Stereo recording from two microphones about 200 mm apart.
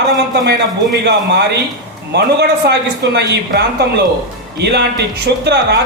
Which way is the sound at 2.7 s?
55° right (ahead or behind).